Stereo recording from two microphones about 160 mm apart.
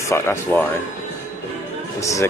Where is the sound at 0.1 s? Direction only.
15° left (ahead or behind).